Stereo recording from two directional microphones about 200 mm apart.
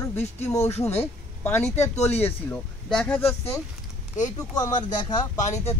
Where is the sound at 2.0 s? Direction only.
30° left (ahead or behind).